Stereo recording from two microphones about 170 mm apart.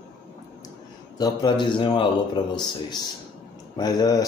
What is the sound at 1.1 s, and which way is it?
Speech, 25° left (ahead or behind).